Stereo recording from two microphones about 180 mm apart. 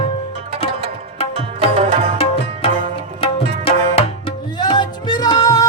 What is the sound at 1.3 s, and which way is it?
Music, 35° right (ahead or behind).